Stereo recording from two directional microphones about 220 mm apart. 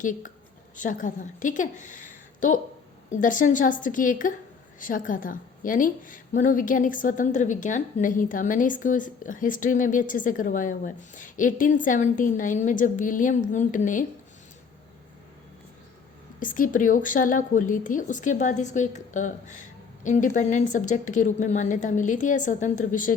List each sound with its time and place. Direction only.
0.0 s a woman's voice: 35° left (ahead or behind)
16.4 s a woman's voice: 35° left (ahead or behind)